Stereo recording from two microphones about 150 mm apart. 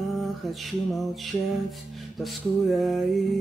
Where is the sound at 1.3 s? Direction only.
25° left (ahead or behind).